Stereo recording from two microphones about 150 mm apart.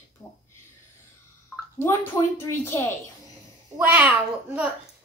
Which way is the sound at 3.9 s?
10° right (ahead or behind).